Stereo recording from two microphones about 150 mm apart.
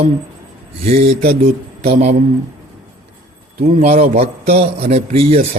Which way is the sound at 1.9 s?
45° right (ahead or behind).